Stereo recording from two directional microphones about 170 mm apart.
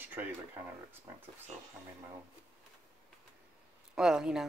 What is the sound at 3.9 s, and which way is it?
Speech, 5° right (ahead or behind).